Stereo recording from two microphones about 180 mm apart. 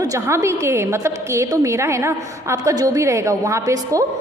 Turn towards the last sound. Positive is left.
turn(degrees=-15)  # may be behind; listen again after turning